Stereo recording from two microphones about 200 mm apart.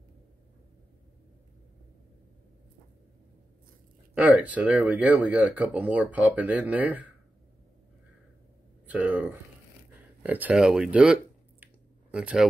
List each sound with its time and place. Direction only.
4.1 s speech: 5° right (ahead or behind)
8.8 s speech: 10° right (ahead or behind)
11.6 s a sound: 5° right (ahead or behind)